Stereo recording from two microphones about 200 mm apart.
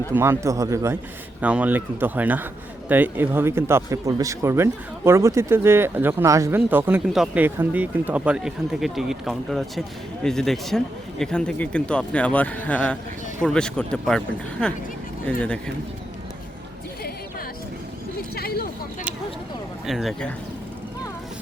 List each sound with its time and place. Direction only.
0.1 s speech: 10° right (ahead or behind); by 14.2 s 5° left (ahead or behind)
15.4 s speech: 5° left (ahead or behind)
18.3 s a sound: 50° left (ahead or behind)
19.8 s speech: centre (ahead or behind)